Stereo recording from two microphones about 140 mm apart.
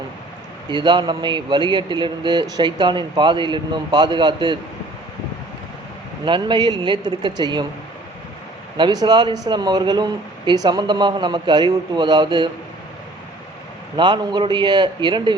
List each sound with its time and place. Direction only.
0.7 s a man's voice: 35° right (ahead or behind)
6.2 s a man's voice: 35° right (ahead or behind)
8.8 s a man's voice: 30° right (ahead or behind)
13.9 s a man's voice: 35° right (ahead or behind)